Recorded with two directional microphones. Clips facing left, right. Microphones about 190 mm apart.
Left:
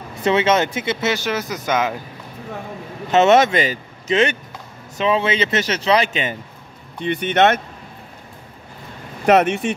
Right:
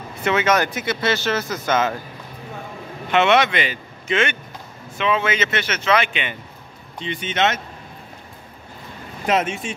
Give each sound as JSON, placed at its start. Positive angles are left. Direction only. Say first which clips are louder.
{"t": 0.2, "sound": "speech", "louder": "left 3 dB", "side_deg": 30}
{"t": 1.1, "sound": "speech", "louder": "even", "side_deg": 15}
{"t": 3.1, "sound": "a man's voice", "louder": "left 4 dB", "side_deg": 40}
{"t": 7.0, "sound": "speech", "louder": "left 6 dB", "side_deg": 60}
{"t": 9.2, "sound": "speech", "louder": "left 6 dB", "side_deg": 65}